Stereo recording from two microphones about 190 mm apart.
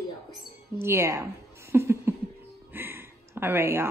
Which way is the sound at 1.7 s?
15° right (ahead or behind).